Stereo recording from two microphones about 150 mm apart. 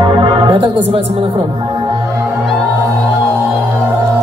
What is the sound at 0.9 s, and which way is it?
Speech, 35° right (ahead or behind).